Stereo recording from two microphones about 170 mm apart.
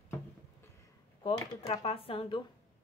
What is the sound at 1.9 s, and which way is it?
Speech, 35° left (ahead or behind).